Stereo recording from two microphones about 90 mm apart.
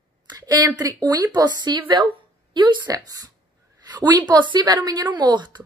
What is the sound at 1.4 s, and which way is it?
A woman's voice, 55° right (ahead or behind).